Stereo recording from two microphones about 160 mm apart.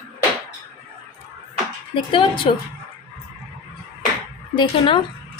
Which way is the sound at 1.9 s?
35° left (ahead or behind).